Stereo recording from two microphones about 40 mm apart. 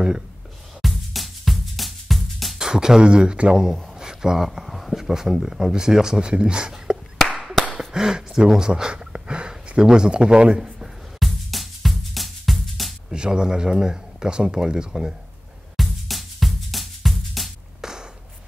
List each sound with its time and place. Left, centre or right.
0.8 s music: centre
2.6 s speech: centre
4.0 s a sound: centre
5.0 s speech: centre
7.3 s clapping: centre
7.9 s speech: centre
8.9 s a sound: right
10.6 s music: centre
13.1 s speech: right
15.7 s music: centre
17.8 s a sound: centre